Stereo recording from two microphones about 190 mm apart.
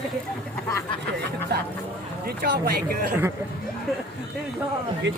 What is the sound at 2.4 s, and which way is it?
Speech, 55° right (ahead or behind).